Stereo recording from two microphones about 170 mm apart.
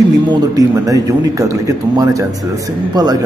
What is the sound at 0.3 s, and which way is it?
Speech, 20° right (ahead or behind).